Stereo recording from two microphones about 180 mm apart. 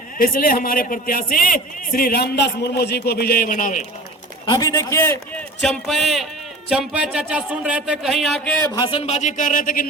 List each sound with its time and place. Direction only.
0.2 s a man's voice: 50° left (ahead or behind)
4.4 s a man's voice: 20° left (ahead or behind)
5.6 s speech: centre (ahead or behind)
8.6 s speech: 20° left (ahead or behind)
8.9 s a man's voice: 35° left (ahead or behind); by 9.8 s 50° left (ahead or behind)